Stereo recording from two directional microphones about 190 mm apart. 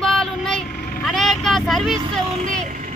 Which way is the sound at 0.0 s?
Centre (ahead or behind).